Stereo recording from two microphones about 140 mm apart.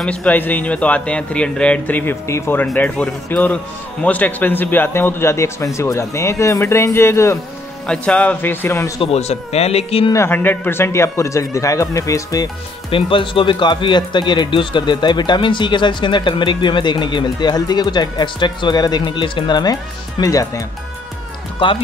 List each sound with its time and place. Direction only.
0.0 s a man's voice: 10° left (ahead or behind)
7.8 s speech: 5° left (ahead or behind)
9.0 s speech: 50° left (ahead or behind)
10.1 s a man's voice: 15° left (ahead or behind)
12.9 s speech: 40° left (ahead or behind)
21.6 s speech: 35° left (ahead or behind)